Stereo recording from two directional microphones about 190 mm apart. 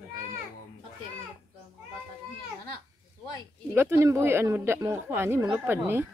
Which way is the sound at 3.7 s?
15° right (ahead or behind).